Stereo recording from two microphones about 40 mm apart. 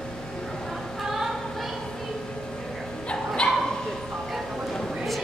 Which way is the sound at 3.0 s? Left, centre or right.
Left.